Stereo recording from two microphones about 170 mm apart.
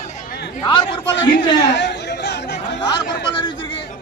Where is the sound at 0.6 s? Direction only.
25° left (ahead or behind).